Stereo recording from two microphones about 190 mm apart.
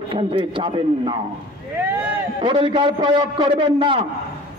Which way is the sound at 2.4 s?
25° right (ahead or behind).